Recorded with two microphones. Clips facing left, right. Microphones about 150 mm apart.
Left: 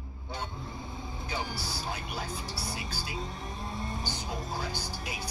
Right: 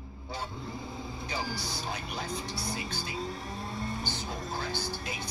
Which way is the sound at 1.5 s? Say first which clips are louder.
Even; 5° left (ahead or behind).